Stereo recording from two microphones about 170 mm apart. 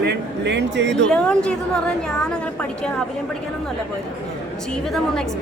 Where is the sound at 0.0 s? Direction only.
85° right.